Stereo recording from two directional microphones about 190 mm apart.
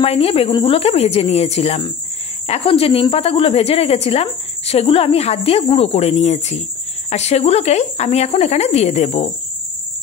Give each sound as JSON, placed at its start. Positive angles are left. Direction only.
{"t": 0.0, "sound": "a woman's voice", "side_deg": 30}